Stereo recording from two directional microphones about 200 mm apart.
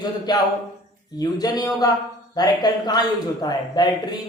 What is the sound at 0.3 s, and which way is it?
A man's voice, 20° left (ahead or behind).